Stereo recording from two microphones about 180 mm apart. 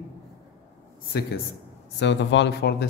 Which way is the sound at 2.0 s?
80° left.